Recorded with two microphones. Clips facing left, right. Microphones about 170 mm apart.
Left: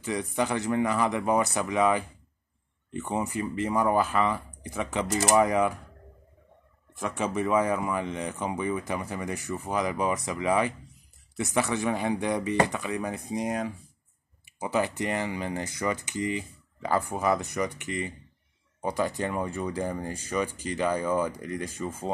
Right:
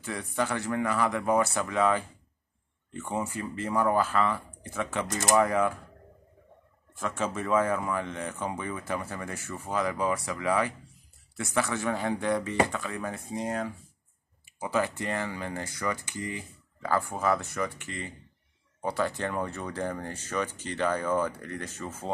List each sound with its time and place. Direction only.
0.0 s speech: 15° left (ahead or behind)
7.0 s speech: 15° left (ahead or behind)